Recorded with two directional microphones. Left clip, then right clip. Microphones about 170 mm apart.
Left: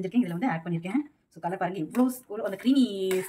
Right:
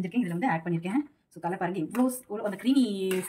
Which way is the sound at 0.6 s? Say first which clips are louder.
Right 1 dB; 10° left (ahead or behind).